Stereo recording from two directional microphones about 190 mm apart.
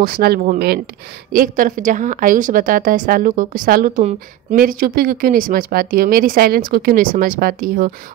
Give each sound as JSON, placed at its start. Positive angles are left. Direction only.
{"t": 0.0, "sound": "a woman's voice", "side_deg": -55}